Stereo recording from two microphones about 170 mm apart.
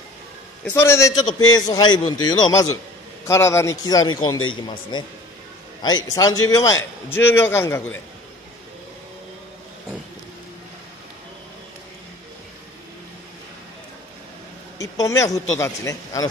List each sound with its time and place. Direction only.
0.7 s a man's voice: 15° left (ahead or behind)
14.8 s a man's voice: 20° left (ahead or behind)